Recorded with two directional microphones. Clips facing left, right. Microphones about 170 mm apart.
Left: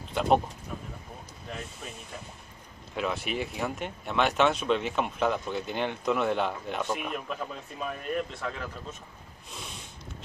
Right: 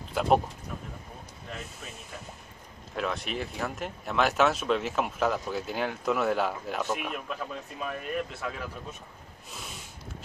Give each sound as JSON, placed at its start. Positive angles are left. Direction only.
{"t": 0.1, "sound": "speech", "side_deg": -5}
{"t": 3.0, "sound": "speech", "side_deg": 5}
{"t": 9.5, "sound": "a sound", "side_deg": -5}